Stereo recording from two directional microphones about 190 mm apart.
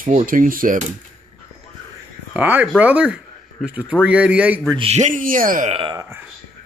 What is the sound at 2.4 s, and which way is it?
Speech, 10° right (ahead or behind).